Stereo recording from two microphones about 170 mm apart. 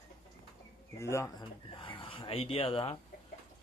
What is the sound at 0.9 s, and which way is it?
Speech, 15° left (ahead or behind).